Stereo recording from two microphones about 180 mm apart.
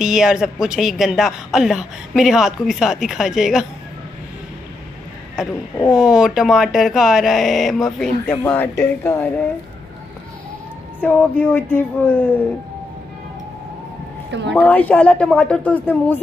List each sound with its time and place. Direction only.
0.0 s a woman's voice: 5° right (ahead or behind)
5.9 s a woman's voice: 5° right (ahead or behind); by 9.5 s 15° left (ahead or behind)
11.0 s speech: 10° left (ahead or behind)
14.5 s speech: 10° left (ahead or behind)